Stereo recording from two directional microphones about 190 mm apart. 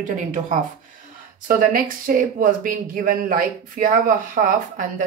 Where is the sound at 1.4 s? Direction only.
45° right (ahead or behind).